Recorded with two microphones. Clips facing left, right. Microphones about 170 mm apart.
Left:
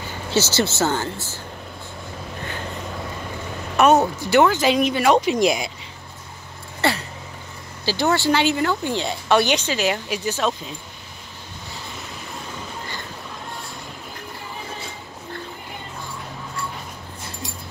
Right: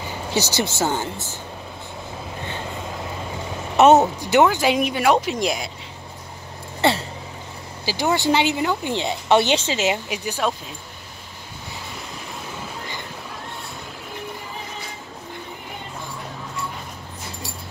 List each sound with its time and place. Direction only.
0.3 s speech: 15° right (ahead or behind)
3.7 s speech: 20° right (ahead or behind); by 5.7 s centre (ahead or behind)
6.8 s a sound: 20° right (ahead or behind)
7.8 s speech: 15° right (ahead or behind)